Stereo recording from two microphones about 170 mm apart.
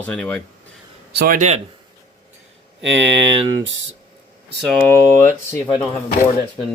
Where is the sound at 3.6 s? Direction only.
90° right.